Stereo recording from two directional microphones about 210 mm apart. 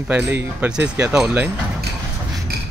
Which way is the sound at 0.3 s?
10° right (ahead or behind).